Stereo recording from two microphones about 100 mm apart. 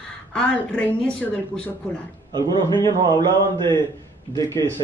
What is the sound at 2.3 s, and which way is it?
Speech, 45° right (ahead or behind).